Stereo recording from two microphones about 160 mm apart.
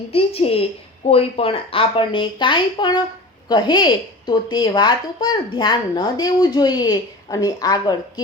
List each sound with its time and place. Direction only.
0.1 s speech: 35° left (ahead or behind)